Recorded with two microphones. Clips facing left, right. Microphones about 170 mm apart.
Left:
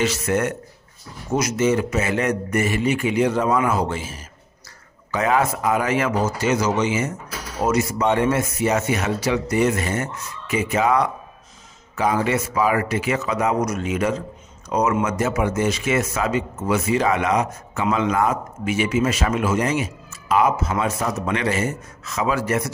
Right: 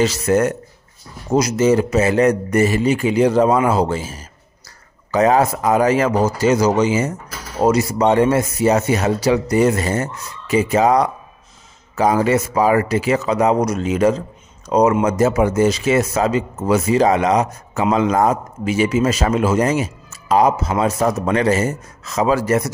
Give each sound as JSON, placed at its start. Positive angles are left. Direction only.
{"t": 0.0, "sound": "a man's voice", "side_deg": -35}